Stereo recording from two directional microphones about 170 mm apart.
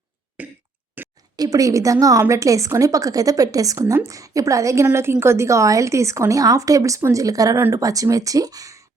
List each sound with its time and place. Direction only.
0.4 s throat clearing: 10° right (ahead or behind)
1.0 s a sound: 10° right (ahead or behind)
1.4 s a woman's voice: 20° right (ahead or behind)